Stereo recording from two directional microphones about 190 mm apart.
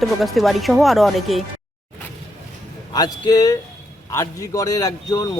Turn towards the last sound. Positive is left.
turn(degrees=20)  # may be behind; listen again after turning